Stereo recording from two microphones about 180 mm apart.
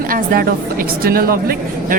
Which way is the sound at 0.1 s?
55° right (ahead or behind).